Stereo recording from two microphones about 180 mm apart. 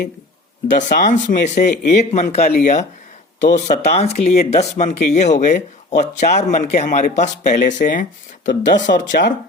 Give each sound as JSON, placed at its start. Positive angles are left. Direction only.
{"t": 0.7, "sound": "speech", "side_deg": 45}
{"t": 9.2, "sound": "speech", "side_deg": 65}